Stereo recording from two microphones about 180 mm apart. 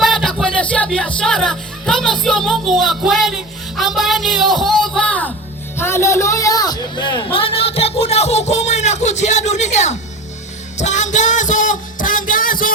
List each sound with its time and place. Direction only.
0.0 s speech: centre (ahead or behind)
3.8 s music: centre (ahead or behind)
4.9 s speech: 5° left (ahead or behind); by 7.2 s 25° left (ahead or behind)
7.3 s a sound: 30° left (ahead or behind)
10.8 s music: 40° left (ahead or behind)